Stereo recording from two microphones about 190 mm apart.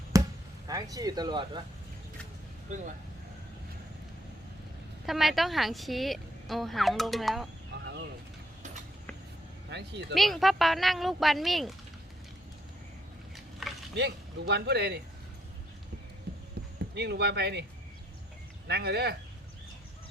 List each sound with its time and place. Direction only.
0.1 s basketball bounce: 15° right (ahead or behind)
0.7 s speech: 20° right (ahead or behind)
2.6 s speech: 40° right (ahead or behind)
5.0 s a woman's voice: centre (ahead or behind)
9.6 s speech: 65° right (ahead or behind)
10.2 s a woman's voice: centre (ahead or behind)
13.3 s a sound: centre (ahead or behind)
13.9 s speech: 60° right (ahead or behind)
16.7 s speech: 60° right (ahead or behind)
18.7 s speech: 60° right (ahead or behind)